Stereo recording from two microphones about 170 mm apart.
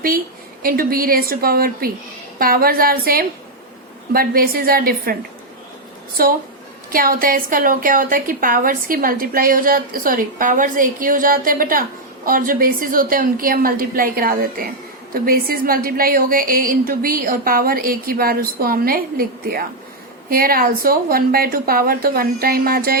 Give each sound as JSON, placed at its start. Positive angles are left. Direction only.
{"t": 0.6, "sound": "a woman's voice", "side_deg": -60}
{"t": 6.2, "sound": "a woman's voice", "side_deg": -60}